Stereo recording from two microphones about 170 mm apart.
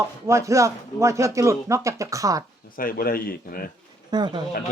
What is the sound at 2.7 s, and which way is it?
Speech, 55° left (ahead or behind).